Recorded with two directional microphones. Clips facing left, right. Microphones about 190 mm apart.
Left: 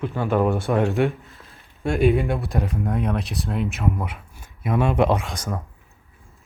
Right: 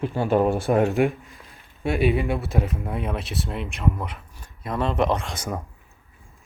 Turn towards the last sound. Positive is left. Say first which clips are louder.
# even
turn(degrees=-10)  # may be behind; listen again after turning